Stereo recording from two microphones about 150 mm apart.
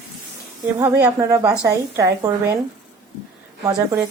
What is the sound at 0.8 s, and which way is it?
Speech, 10° right (ahead or behind).